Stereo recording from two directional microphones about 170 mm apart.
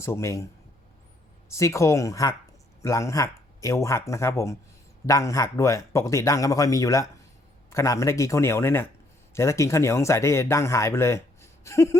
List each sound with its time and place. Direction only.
0.0 s speech: 15° left (ahead or behind)
1.5 s a man's voice: 15° left (ahead or behind)